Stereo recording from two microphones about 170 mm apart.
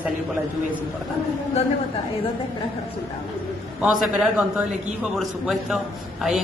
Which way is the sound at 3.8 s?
5° right (ahead or behind).